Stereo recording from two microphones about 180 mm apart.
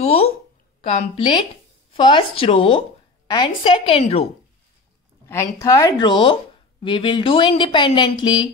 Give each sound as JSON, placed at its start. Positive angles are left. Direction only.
{"t": 0.0, "sound": "a woman's voice", "side_deg": 35}
{"t": 5.3, "sound": "speech", "side_deg": 15}